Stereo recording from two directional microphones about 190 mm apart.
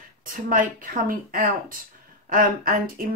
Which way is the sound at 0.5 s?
45° right (ahead or behind).